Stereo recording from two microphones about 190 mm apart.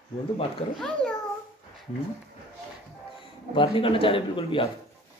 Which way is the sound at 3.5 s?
25° left (ahead or behind).